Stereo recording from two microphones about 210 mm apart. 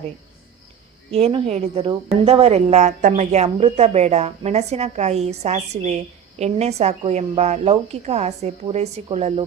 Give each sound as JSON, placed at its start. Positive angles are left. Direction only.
{"t": 1.1, "sound": "a woman's voice", "side_deg": -30}